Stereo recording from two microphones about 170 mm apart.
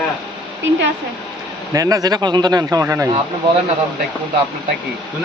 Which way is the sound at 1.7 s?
20° right (ahead or behind).